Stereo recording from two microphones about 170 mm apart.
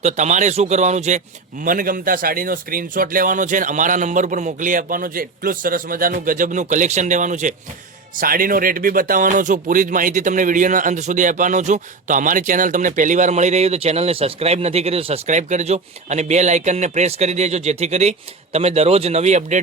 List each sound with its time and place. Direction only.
0.0 s speech: 45° right (ahead or behind)
1.6 s speech: 55° right (ahead or behind)